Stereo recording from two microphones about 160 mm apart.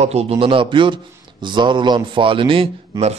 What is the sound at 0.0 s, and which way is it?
A man's voice, 40° right (ahead or behind).